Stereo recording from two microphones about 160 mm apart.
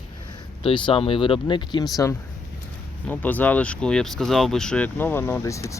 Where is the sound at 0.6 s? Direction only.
35° left (ahead or behind).